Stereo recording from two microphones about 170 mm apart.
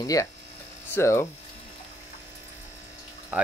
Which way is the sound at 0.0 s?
20° left (ahead or behind).